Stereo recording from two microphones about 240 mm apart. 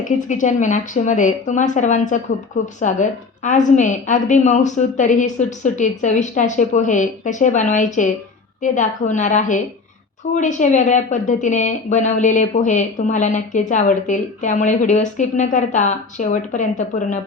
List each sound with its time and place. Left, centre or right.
0.0 s speech: left